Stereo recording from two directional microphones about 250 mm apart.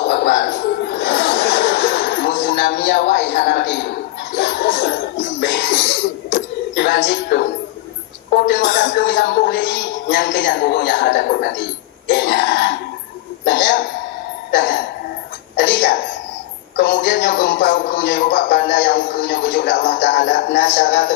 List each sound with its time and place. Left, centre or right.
0.0 s laughter: left
4.4 s music: left
8.3 s a sound: left
8.9 s speech: left
14.5 s speech: left
15.5 s speech: left